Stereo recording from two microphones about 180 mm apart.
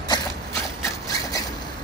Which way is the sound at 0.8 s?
20° left (ahead or behind).